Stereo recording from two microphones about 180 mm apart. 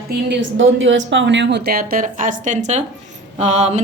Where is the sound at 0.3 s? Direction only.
90° right.